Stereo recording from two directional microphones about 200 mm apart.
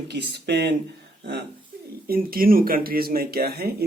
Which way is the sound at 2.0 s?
50° right (ahead or behind).